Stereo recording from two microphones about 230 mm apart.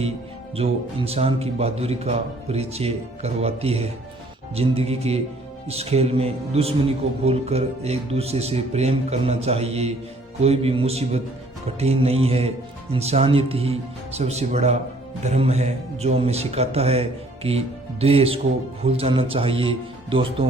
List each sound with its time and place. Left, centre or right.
0.5 s speech: right